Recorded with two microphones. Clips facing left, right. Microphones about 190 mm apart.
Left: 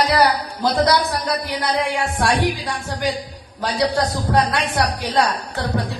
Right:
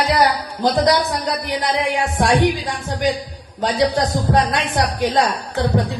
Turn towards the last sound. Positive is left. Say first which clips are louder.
# right 4 dB
turn(degrees=-15)  # may be behind; listen again after turning